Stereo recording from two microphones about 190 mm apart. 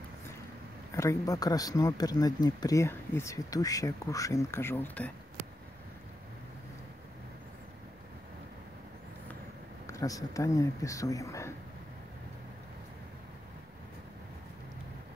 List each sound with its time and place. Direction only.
0.9 s speech: 15° left (ahead or behind)
9.8 s speech: 15° left (ahead or behind)